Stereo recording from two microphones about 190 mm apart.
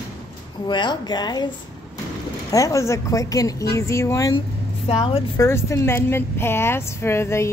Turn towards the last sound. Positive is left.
turn(degrees=15)  # may be behind; listen again after turning